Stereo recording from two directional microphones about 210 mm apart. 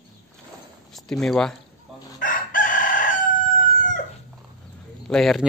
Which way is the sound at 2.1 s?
40° left (ahead or behind).